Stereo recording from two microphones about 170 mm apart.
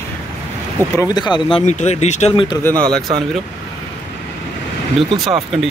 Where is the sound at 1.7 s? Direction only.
45° left (ahead or behind).